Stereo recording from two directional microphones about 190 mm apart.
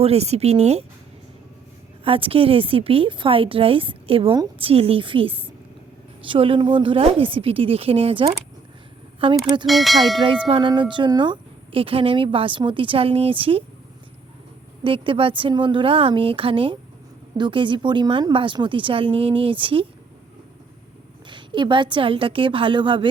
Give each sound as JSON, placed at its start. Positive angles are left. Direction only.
{"t": 0.0, "sound": "speech", "side_deg": -35}
{"t": 2.0, "sound": "a woman's voice", "side_deg": -30}
{"t": 9.6, "sound": "speech", "side_deg": 0}
{"t": 10.2, "sound": "a woman's voice", "side_deg": -25}
{"t": 14.8, "sound": "a woman's voice", "side_deg": -25}
{"t": 21.2, "sound": "a woman's voice", "side_deg": -25}